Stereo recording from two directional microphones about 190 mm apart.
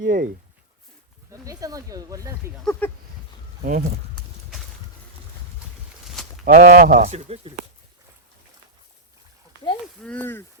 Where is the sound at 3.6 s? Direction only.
50° right (ahead or behind).